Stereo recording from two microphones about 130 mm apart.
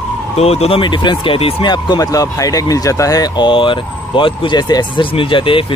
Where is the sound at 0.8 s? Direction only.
35° left (ahead or behind).